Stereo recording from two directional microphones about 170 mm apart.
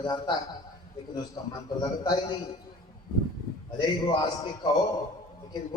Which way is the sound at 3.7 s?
25° left (ahead or behind).